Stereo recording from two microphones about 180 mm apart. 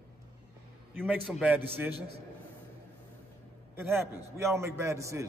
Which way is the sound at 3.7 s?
15° right (ahead or behind).